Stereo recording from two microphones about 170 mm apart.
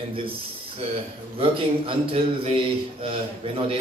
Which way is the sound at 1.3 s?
35° right (ahead or behind).